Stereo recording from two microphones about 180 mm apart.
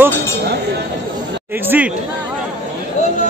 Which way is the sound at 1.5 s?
10° right (ahead or behind).